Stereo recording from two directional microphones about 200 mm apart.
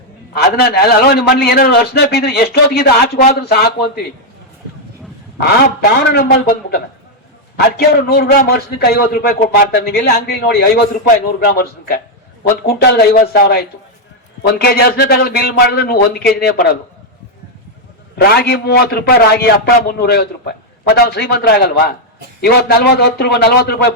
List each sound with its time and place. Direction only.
0.3 s a man's voice: 50° left (ahead or behind)
6.0 s a man's voice: 55° left (ahead or behind)
18.2 s a man's voice: 50° left (ahead or behind)